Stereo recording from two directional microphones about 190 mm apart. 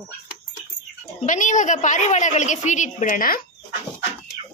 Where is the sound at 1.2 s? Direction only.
40° left (ahead or behind).